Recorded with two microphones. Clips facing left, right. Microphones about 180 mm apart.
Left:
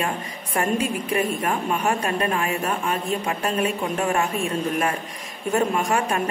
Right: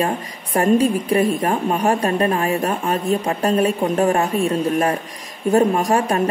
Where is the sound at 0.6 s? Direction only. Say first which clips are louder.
Right 7 dB; 35° right (ahead or behind).